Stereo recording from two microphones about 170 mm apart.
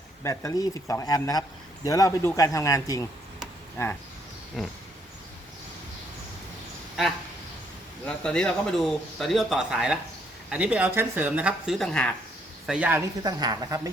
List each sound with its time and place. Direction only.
0.2 s speech: 15° left (ahead or behind)
4.6 s speech: centre (ahead or behind)
8.0 s speech: 5° left (ahead or behind)
12.6 s speech: 5° right (ahead or behind)
13.2 s speech: 20° right (ahead or behind)